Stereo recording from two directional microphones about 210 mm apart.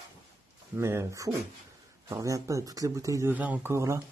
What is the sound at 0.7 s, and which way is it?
A man's voice, 10° right (ahead or behind).